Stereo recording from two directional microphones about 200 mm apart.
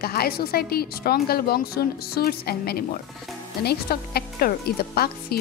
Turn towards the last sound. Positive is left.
turn(degrees=50)  # may be behind; listen again after turning